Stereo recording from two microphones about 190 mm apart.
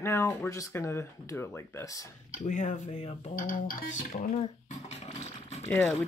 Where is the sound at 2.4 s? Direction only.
45° left (ahead or behind).